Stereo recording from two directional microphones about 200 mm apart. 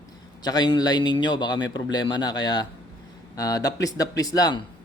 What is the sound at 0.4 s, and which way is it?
Speech, 20° left (ahead or behind).